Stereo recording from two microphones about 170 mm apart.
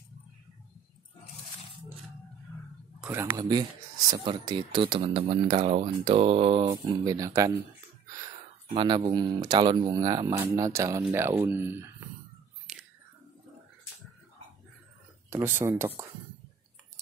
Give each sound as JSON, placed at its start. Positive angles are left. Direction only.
{"t": 2.5, "sound": "a sound", "side_deg": 15}
{"t": 3.0, "sound": "speech", "side_deg": -10}
{"t": 3.3, "sound": "speech", "side_deg": -25}
{"t": 6.7, "sound": "speech", "side_deg": -20}
{"t": 8.7, "sound": "speech", "side_deg": -30}
{"t": 12.7, "sound": "whispering", "side_deg": 0}
{"t": 15.2, "sound": "speech", "side_deg": -15}